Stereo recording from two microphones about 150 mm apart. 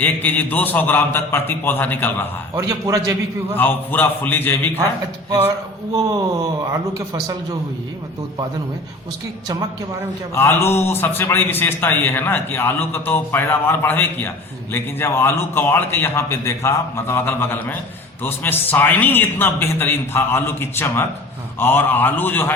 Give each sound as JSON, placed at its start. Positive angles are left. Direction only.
{"t": 0.0, "sound": "a man's voice", "side_deg": 10}
{"t": 2.6, "sound": "speech", "side_deg": -20}
{"t": 3.5, "sound": "a man's voice", "side_deg": 10}
{"t": 5.9, "sound": "speech", "side_deg": -25}
{"t": 10.3, "sound": "a man's voice", "side_deg": 15}